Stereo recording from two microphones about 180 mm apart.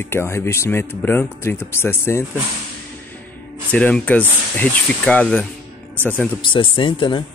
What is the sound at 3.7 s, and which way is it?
A man's voice, 10° left (ahead or behind).